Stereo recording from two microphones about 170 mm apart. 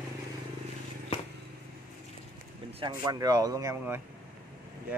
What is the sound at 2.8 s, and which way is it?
Speech, 25° right (ahead or behind).